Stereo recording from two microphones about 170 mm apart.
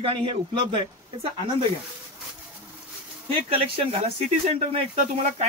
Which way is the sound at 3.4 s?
35° right (ahead or behind).